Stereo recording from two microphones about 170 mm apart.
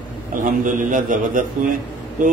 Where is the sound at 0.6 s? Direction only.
50° right (ahead or behind).